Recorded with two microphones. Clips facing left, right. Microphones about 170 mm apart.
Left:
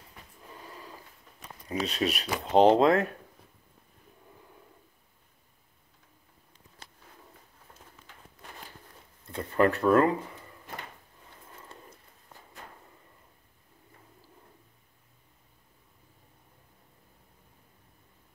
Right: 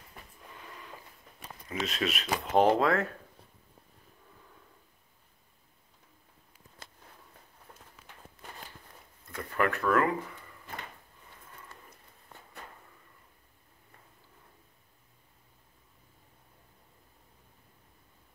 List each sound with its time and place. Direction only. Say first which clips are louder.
0.6 s a sound: left 3 dB; 30° left (ahead or behind)
1.7 s speech: left 3 dB; 35° left (ahead or behind)
2.6 s speech: left 5 dB; 20° left (ahead or behind)
9.3 s speech: left 6 dB; 30° left (ahead or behind)
11.7 s horse: left 4 dB; 25° left (ahead or behind)